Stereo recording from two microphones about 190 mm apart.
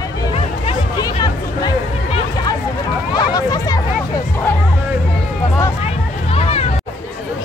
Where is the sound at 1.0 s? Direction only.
20° left (ahead or behind).